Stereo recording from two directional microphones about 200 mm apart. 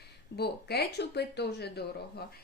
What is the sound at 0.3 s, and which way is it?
A woman's voice, 55° left (ahead or behind).